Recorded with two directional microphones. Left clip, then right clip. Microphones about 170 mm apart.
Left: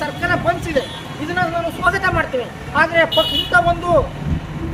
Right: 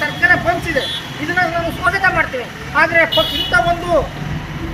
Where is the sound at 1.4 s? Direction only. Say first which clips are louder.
Right 2 dB; 10° left (ahead or behind).